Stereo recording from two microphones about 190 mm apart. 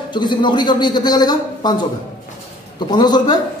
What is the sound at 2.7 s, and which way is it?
Speech, 20° left (ahead or behind).